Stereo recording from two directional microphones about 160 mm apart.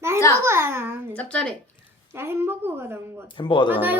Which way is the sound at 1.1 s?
5° left (ahead or behind).